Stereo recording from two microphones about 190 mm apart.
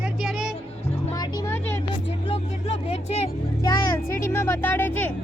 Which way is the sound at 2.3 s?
35° left (ahead or behind).